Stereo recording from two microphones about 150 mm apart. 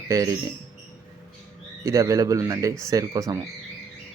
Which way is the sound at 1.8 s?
20° right (ahead or behind).